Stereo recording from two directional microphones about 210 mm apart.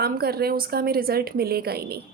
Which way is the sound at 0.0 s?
45° right (ahead or behind).